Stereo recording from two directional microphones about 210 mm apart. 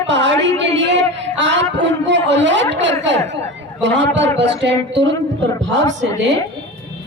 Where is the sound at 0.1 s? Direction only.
60° right (ahead or behind).